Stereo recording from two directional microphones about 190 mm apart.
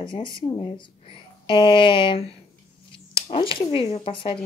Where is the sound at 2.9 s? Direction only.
25° left (ahead or behind).